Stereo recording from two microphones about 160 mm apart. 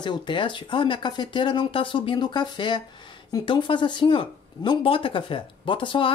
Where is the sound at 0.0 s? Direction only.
30° left (ahead or behind).